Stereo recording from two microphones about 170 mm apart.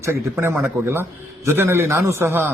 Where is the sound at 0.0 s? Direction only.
15° right (ahead or behind).